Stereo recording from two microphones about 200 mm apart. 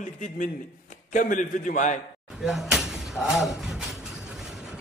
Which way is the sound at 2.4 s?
Centre (ahead or behind).